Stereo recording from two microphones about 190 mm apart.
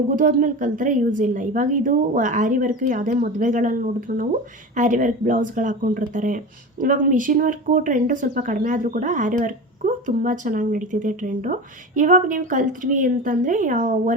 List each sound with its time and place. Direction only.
0.2 s speech: 45° right (ahead or behind)